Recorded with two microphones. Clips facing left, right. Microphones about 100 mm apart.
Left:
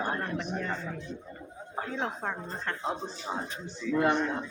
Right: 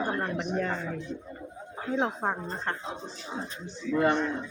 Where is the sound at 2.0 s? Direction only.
30° right (ahead or behind).